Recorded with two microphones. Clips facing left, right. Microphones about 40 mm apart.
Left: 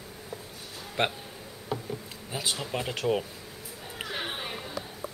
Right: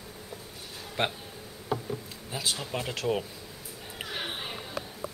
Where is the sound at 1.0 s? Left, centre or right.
Centre.